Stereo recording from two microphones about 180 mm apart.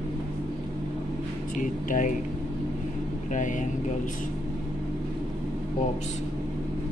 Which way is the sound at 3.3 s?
45° left (ahead or behind).